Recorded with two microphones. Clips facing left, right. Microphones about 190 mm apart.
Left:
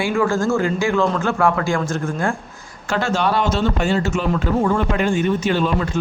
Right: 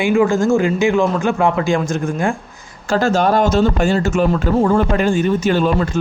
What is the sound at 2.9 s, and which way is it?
Speech, 40° right (ahead or behind).